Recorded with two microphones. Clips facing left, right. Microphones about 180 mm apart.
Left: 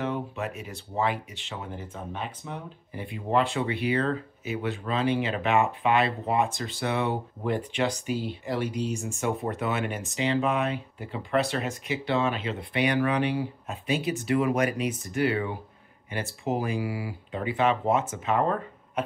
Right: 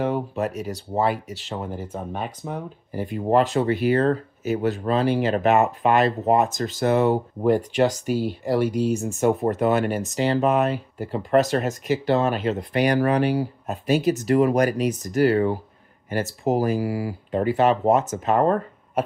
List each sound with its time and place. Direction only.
0.0 s speech: 40° right (ahead or behind)